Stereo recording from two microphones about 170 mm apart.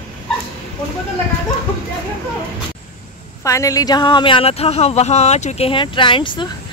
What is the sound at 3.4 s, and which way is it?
Speech, 20° left (ahead or behind).